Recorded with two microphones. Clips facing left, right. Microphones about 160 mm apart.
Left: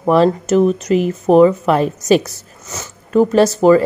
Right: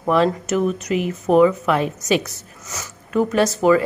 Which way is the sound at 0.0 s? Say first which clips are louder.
Left 5 dB; 35° left (ahead or behind).